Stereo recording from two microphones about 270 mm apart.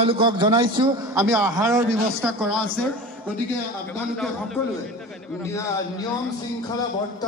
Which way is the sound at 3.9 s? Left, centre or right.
Centre.